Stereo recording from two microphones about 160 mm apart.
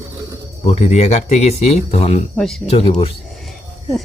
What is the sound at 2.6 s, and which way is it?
Speech, 40° left (ahead or behind).